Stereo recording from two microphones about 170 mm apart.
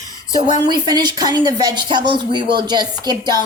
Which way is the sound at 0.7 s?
25° right (ahead or behind).